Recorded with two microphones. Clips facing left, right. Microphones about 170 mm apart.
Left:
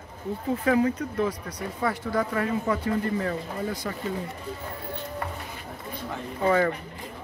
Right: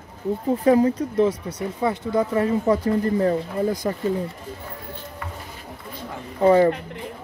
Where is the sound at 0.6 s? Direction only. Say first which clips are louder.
Right 6 dB; 35° right (ahead or behind).